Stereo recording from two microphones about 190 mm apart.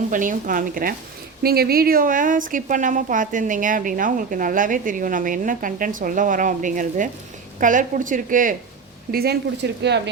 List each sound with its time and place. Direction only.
0.1 s speech: 45° right (ahead or behind)
9.1 s speech: 55° right (ahead or behind)